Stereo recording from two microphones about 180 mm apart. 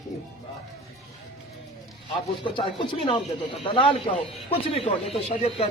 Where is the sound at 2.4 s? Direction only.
25° left (ahead or behind).